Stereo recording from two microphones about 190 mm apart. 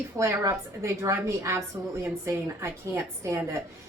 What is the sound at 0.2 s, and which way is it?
A woman's voice, 15° right (ahead or behind).